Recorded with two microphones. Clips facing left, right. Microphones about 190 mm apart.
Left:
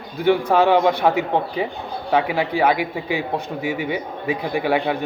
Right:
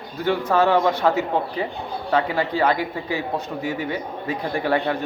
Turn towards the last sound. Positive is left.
turn(degrees=10)  # may be behind; listen again after turning